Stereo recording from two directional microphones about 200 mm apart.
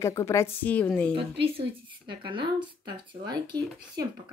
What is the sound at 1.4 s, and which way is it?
Speech, 25° right (ahead or behind).